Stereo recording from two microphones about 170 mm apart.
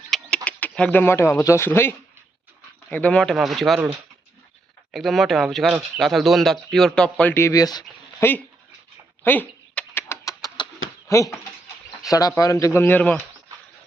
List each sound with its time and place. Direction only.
0.1 s bird: centre (ahead or behind)
0.4 s speech: 10° left (ahead or behind)
4.9 s speech: centre (ahead or behind); by 8.3 s 25° left (ahead or behind)
9.2 s rodents: 10° left (ahead or behind)
11.1 s speech: 15° left (ahead or behind)
12.4 s speech: 20° left (ahead or behind)